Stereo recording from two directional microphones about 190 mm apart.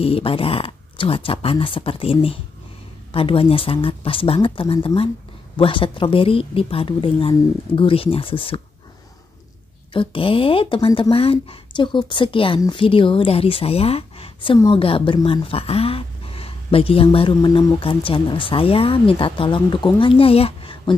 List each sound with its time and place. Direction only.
0.0 s speech: 30° left (ahead or behind)
9.9 s speech: 30° left (ahead or behind)